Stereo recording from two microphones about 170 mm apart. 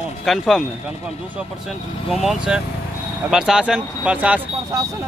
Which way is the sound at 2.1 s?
Centre (ahead or behind).